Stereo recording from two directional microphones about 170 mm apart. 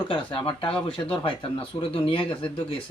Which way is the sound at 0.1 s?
30° left (ahead or behind).